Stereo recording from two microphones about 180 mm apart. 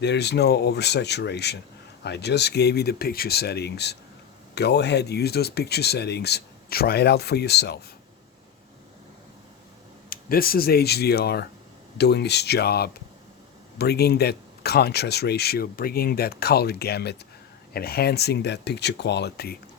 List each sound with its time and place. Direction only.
0.0 s speech: 70° left (ahead or behind)
10.1 s speech: 55° left (ahead or behind)